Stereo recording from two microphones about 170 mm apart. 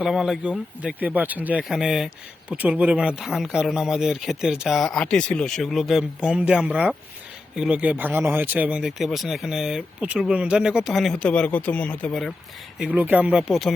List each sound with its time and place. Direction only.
0.0 s speech: centre (ahead or behind)
12.8 s speech: 10° right (ahead or behind)